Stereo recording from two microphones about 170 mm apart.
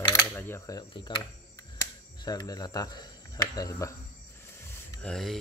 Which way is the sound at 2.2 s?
25° left (ahead or behind).